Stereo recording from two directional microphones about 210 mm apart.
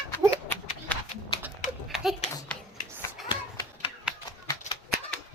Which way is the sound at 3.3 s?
25° left (ahead or behind).